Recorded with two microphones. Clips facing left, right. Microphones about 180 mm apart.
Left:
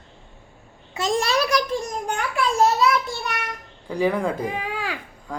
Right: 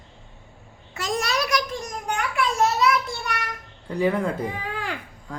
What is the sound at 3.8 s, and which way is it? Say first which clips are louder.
Speech: left 1 dB; 10° left (ahead or behind).